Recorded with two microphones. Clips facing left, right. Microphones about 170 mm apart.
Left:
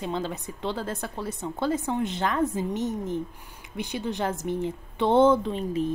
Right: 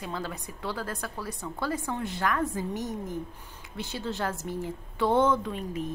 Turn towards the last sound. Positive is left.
turn(degrees=30)  # may be behind; listen again after turning